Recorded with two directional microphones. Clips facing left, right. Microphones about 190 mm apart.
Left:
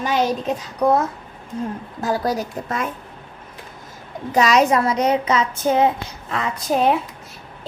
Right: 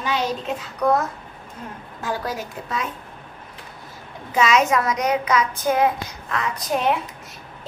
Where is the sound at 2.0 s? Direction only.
35° left (ahead or behind).